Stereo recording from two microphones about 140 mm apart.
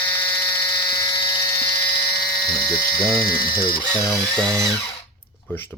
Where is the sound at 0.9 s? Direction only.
35° left (ahead or behind).